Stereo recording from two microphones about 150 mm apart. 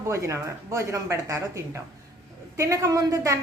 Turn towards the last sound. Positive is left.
turn(degrees=-20)  # may be behind; listen again after turning